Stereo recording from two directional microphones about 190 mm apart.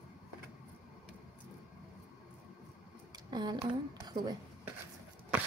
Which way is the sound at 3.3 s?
20° right (ahead or behind).